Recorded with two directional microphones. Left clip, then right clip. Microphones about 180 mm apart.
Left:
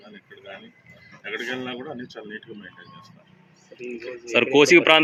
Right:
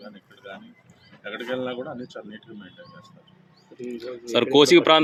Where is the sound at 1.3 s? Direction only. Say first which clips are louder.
Right 1 dB; 15° right (ahead or behind).